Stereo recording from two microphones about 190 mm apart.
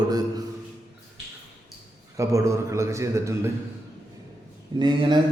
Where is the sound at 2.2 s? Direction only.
15° right (ahead or behind).